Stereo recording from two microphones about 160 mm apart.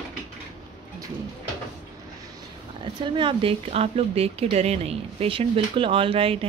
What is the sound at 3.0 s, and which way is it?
Speech, 35° right (ahead or behind).